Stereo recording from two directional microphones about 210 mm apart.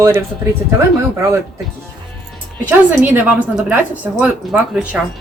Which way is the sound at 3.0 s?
10° right (ahead or behind).